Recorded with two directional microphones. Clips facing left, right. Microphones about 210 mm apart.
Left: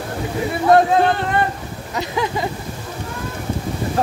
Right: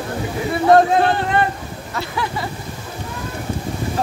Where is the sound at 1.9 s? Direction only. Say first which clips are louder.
Left 3 dB; 20° left (ahead or behind).